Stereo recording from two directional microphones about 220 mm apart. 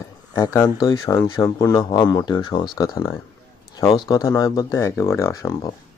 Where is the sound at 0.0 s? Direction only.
15° left (ahead or behind).